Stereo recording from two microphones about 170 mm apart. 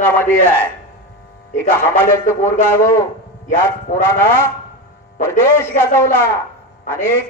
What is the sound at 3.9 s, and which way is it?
Speech, 45° left (ahead or behind).